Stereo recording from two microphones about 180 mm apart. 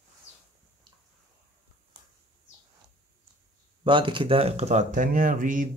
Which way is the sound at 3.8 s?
25° right (ahead or behind).